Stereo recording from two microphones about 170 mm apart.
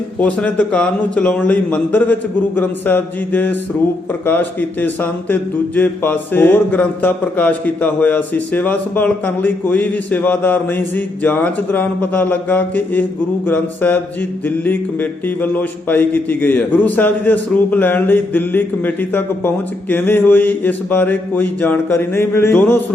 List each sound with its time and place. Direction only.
0.2 s speech: 10° left (ahead or behind)